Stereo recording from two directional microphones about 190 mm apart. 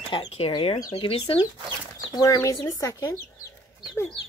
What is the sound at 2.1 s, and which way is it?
Speech, 20° left (ahead or behind).